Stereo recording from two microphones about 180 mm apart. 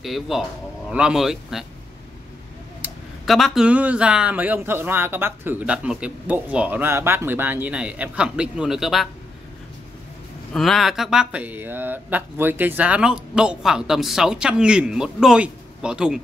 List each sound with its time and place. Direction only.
0.0 s speech: centre (ahead or behind)
2.8 s speech: centre (ahead or behind)
10.5 s speech: centre (ahead or behind)